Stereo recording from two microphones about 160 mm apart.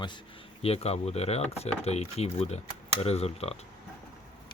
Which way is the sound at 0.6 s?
40° left (ahead or behind).